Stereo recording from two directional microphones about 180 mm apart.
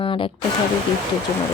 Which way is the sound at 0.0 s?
25° left (ahead or behind).